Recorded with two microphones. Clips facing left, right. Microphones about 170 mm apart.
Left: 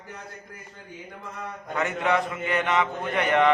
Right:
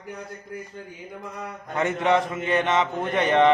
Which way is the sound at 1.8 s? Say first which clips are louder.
Right 3 dB; 20° right (ahead or behind).